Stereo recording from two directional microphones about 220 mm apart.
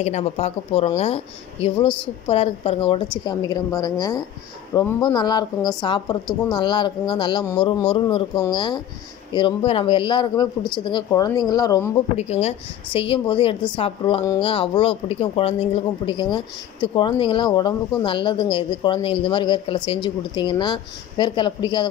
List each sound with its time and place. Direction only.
0.0 s a woman's voice: 30° left (ahead or behind)
12.2 s a woman's voice: 30° left (ahead or behind)